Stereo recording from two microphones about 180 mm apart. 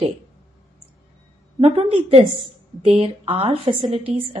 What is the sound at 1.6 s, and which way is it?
A woman's voice, 35° right (ahead or behind).